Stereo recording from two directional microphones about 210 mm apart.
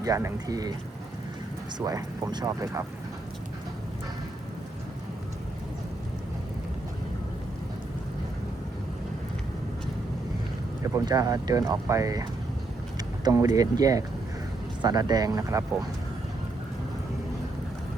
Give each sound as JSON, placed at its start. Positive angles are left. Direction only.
{"t": 0.0, "sound": "speech", "side_deg": -15}
{"t": 1.8, "sound": "speech", "side_deg": -15}
{"t": 10.8, "sound": "speech", "side_deg": -15}